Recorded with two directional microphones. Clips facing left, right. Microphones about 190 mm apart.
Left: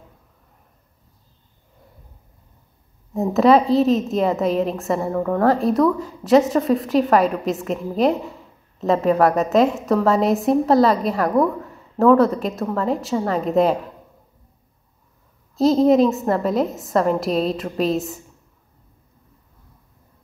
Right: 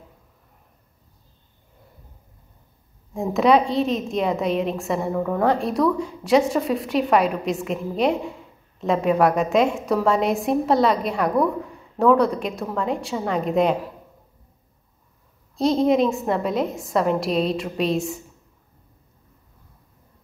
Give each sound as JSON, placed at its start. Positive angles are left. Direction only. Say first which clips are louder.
{"t": 3.1, "sound": "a woman's voice", "louder": "left 3 dB", "side_deg": 0}
{"t": 15.5, "sound": "a woman's voice", "louder": "left 4 dB", "side_deg": 0}